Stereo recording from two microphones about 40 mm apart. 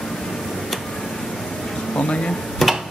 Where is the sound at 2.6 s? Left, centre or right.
Centre.